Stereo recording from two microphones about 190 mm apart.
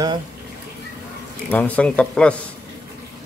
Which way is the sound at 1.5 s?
10° left (ahead or behind).